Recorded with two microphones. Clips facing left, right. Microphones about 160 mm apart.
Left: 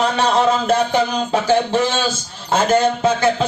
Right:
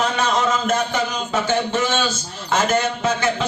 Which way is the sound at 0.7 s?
35° left (ahead or behind).